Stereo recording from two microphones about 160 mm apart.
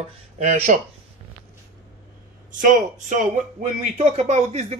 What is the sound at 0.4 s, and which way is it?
Speech, 45° right (ahead or behind).